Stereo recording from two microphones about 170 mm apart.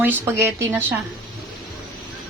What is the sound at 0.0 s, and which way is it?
Speech, 15° right (ahead or behind).